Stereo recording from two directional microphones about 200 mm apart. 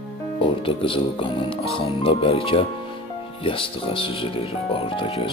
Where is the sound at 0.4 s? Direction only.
25° left (ahead or behind).